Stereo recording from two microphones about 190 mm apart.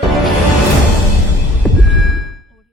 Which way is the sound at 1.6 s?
Centre (ahead or behind).